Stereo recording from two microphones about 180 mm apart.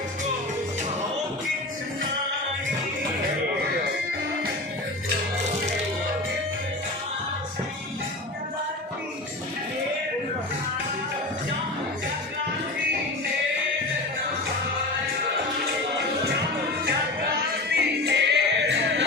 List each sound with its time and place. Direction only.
17.7 s music: 70° right (ahead or behind)